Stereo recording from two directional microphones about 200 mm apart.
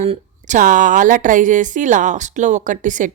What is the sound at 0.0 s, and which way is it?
A woman's voice, 35° right (ahead or behind).